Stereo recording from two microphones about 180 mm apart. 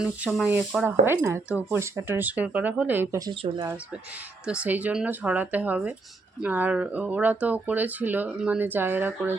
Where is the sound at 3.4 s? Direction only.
35° right (ahead or behind).